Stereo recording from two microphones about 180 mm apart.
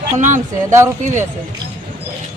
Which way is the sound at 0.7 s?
15° right (ahead or behind).